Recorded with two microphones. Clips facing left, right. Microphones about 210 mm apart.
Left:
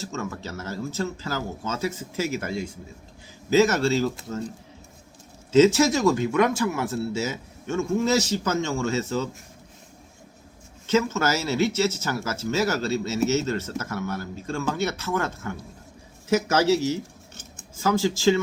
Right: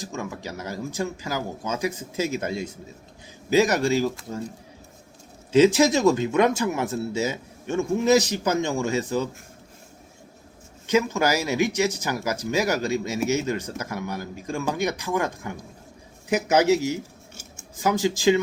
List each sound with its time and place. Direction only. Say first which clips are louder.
0.0 s speech: even; 15° right (ahead or behind)
5.5 s speech: even; 15° right (ahead or behind)
10.8 s speech: right 1 dB; 15° right (ahead or behind)